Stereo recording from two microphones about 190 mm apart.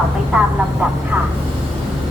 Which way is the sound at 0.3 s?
5° right (ahead or behind).